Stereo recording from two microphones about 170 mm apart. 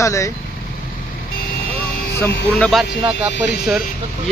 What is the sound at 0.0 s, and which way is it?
Speech, 20° left (ahead or behind).